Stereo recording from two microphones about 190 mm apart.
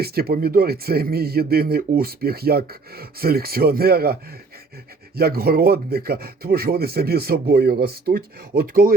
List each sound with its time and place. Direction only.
0.0 s speech: 55° right (ahead or behind)